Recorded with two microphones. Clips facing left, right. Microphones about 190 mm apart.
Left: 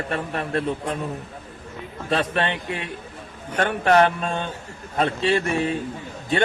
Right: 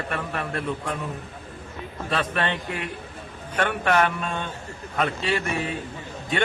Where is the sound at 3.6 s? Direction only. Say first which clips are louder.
Left 4 dB; 35° left (ahead or behind).